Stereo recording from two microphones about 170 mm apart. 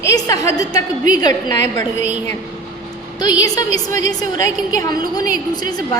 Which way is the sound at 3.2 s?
20° left (ahead or behind).